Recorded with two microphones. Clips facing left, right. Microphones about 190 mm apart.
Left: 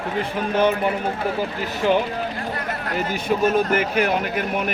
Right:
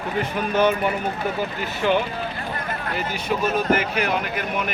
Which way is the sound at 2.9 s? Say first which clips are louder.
Left 4 dB; 45° left (ahead or behind).